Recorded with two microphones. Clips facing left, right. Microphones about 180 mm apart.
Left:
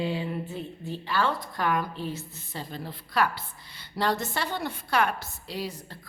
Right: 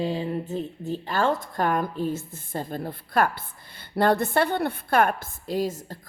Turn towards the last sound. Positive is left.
turn(degrees=-45)  # may be behind; listen again after turning